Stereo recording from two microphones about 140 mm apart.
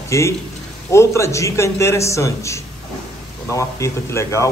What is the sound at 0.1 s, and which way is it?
A man's voice, 20° left (ahead or behind).